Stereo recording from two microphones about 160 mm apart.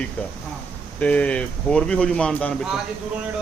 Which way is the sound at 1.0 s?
10° left (ahead or behind).